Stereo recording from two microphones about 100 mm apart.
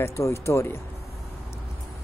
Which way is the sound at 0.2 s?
30° left (ahead or behind).